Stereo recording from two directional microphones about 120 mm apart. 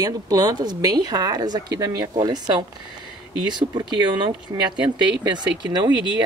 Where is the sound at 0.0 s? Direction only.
30° right (ahead or behind).